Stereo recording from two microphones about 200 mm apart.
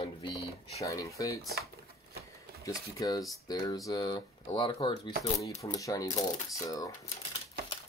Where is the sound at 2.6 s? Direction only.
15° left (ahead or behind).